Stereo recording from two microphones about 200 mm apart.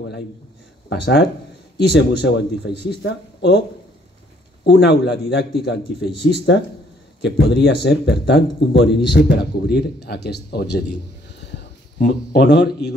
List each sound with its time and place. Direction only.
0.8 s speech: 55° left (ahead or behind)
4.6 s speech: 55° left (ahead or behind)
11.3 s a sound: 60° left (ahead or behind)